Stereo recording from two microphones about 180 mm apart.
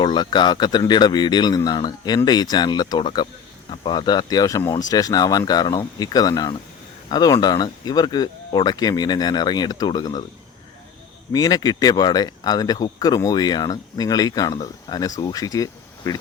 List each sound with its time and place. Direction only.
0.0 s speech: 25° left (ahead or behind)
11.3 s speech: 20° left (ahead or behind)